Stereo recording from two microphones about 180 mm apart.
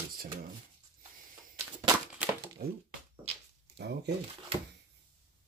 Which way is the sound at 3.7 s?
65° right (ahead or behind).